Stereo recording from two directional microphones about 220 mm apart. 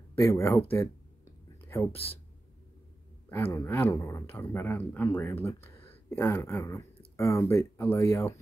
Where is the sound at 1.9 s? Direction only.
25° left (ahead or behind).